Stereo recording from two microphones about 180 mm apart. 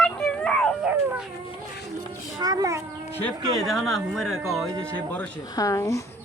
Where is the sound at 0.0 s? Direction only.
5° left (ahead or behind).